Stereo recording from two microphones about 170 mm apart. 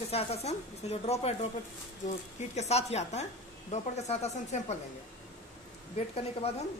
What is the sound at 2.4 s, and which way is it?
A woman's voice, 40° left (ahead or behind).